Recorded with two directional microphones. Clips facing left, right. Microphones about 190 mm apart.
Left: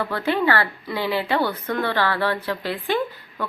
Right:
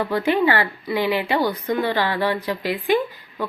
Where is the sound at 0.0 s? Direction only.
15° right (ahead or behind).